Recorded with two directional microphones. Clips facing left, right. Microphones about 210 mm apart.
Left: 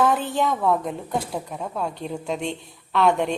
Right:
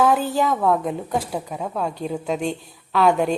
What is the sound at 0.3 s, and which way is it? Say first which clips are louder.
A woman's voice: right 2 dB; centre (ahead or behind).